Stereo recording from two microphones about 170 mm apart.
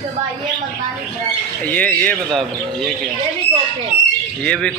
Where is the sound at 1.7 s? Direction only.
10° left (ahead or behind).